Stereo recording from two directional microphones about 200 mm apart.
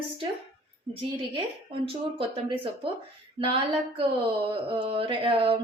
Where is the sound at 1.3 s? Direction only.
25° right (ahead or behind).